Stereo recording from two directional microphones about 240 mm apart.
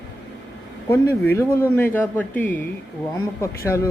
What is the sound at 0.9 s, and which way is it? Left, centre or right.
Speech, centre.